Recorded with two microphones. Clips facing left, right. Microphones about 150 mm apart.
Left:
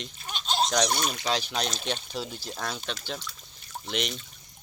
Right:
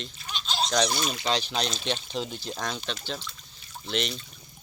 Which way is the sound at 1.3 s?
10° left (ahead or behind).